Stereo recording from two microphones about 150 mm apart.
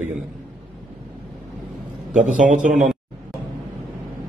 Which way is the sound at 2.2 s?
55° right (ahead or behind).